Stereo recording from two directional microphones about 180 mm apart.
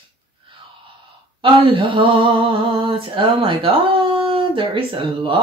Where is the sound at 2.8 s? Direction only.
30° right (ahead or behind).